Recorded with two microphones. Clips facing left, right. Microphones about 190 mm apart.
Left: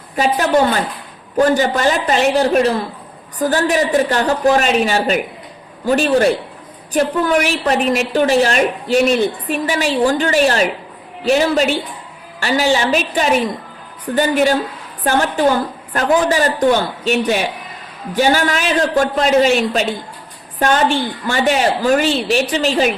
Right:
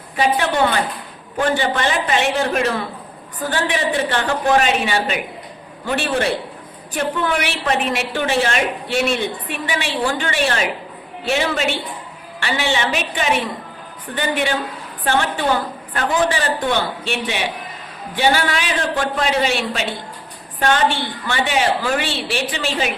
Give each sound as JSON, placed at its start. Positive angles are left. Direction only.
{"t": 0.2, "sound": "a woman's voice", "side_deg": 40}